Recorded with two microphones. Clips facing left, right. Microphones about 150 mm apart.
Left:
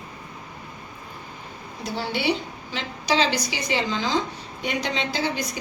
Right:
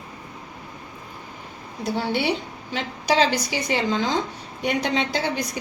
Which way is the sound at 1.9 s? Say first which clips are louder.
Right 1 dB; 55° right (ahead or behind).